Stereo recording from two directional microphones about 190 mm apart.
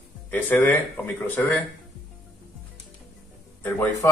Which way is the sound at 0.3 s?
10° left (ahead or behind).